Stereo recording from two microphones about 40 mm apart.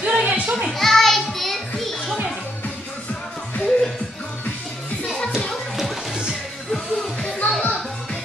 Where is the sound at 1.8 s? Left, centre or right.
Centre.